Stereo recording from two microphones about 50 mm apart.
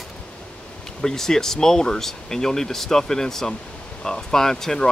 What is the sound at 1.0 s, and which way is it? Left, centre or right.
Speech, centre.